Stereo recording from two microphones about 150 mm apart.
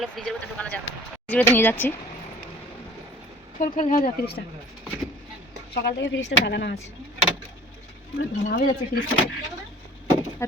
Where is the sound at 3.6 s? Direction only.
55° left (ahead or behind).